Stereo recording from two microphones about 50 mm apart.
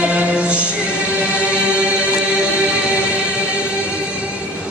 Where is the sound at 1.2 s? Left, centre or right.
Right.